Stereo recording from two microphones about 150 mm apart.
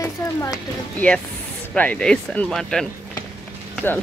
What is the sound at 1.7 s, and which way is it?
Speech, 5° left (ahead or behind).